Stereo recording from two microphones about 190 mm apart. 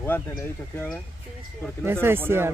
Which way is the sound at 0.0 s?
10° left (ahead or behind).